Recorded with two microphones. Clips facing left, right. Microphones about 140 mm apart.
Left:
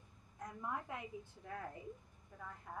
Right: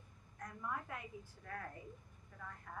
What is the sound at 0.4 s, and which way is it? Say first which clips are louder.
A woman's voice: left 1 dB; 20° left (ahead or behind).